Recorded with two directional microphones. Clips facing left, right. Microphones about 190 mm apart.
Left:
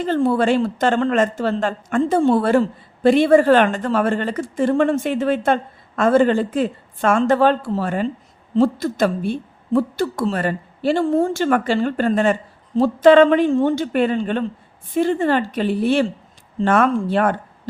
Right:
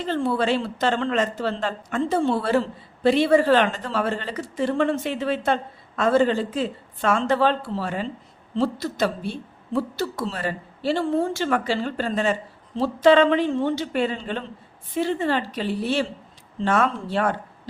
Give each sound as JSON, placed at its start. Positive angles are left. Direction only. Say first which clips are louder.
{"t": 0.0, "sound": "a woman's voice", "louder": "left 6 dB", "side_deg": 45}